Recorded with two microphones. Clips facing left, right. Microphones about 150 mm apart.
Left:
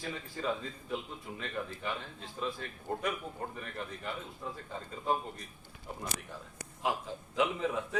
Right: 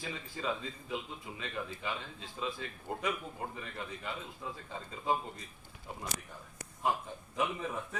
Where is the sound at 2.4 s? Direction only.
55° left (ahead or behind).